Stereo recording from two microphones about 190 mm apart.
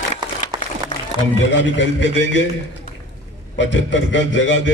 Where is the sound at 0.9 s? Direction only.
25° left (ahead or behind).